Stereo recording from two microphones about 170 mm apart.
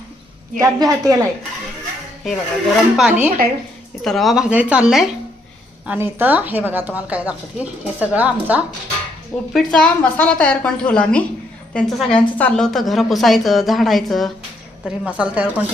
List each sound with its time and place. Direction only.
0.6 s a woman's voice: 20° right (ahead or behind)
2.2 s a woman's voice: centre (ahead or behind)
9.5 s a woman's voice: centre (ahead or behind)